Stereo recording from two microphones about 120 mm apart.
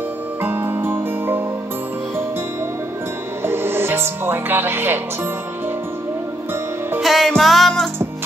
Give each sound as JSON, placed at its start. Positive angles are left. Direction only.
{"t": 0.4, "sound": "music", "side_deg": -20}
{"t": 3.4, "sound": "music", "side_deg": -20}
{"t": 7.0, "sound": "music", "side_deg": 0}